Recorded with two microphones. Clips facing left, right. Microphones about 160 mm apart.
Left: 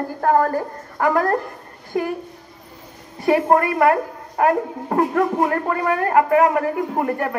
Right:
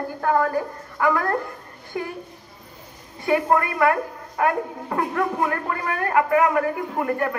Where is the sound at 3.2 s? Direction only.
40° left (ahead or behind).